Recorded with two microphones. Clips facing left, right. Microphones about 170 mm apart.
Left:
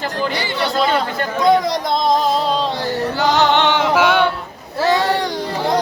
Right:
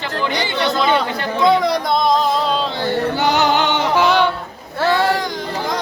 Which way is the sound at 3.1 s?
20° right (ahead or behind).